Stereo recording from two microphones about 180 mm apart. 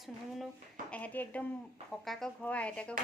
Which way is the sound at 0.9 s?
10° left (ahead or behind).